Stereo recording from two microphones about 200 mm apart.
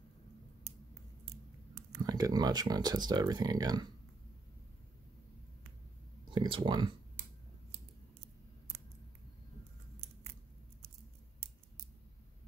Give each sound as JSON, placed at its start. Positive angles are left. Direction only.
{"t": 2.0, "sound": "speech", "side_deg": -20}
{"t": 6.3, "sound": "speech", "side_deg": -25}